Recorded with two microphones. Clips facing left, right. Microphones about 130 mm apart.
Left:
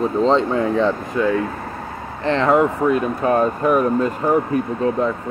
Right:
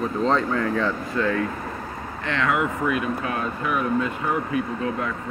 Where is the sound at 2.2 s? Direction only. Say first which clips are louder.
Left 8 dB; 35° left (ahead or behind).